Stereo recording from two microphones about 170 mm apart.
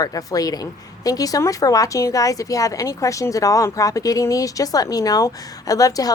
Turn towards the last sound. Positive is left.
turn(degrees=20)  # may be behind; listen again after turning